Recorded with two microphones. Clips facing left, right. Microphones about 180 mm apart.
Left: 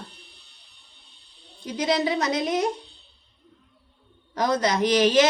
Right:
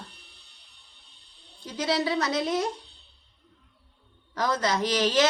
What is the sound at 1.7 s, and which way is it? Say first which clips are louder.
Speech: left 3 dB; 15° left (ahead or behind).